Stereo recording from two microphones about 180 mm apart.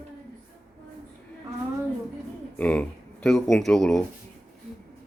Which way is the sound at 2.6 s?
10° left (ahead or behind).